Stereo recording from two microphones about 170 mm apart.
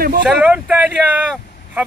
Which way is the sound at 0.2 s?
5° right (ahead or behind).